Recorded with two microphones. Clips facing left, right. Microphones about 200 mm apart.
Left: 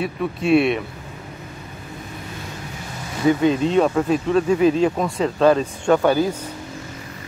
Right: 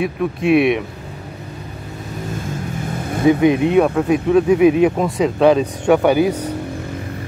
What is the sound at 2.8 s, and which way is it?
Vehicle, 55° right (ahead or behind).